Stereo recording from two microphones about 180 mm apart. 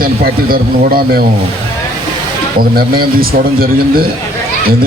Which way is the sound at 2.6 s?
55° right (ahead or behind).